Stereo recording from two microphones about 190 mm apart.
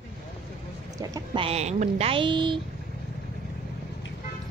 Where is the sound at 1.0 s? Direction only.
20° right (ahead or behind).